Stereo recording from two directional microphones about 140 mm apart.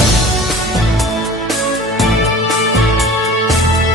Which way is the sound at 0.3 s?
Centre (ahead or behind).